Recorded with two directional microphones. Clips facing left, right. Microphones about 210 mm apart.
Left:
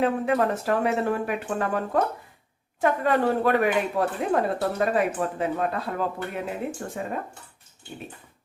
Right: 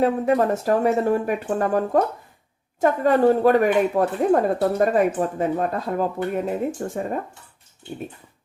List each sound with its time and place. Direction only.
0.0 s speech: 40° right (ahead or behind)
2.8 s speech: 40° right (ahead or behind)